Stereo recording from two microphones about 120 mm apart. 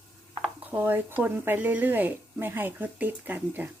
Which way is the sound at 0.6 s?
15° right (ahead or behind).